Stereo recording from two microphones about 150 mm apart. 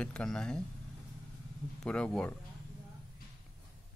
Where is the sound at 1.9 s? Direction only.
5° left (ahead or behind).